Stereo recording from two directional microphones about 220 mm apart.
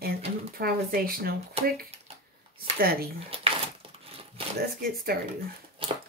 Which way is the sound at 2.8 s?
45° right (ahead or behind).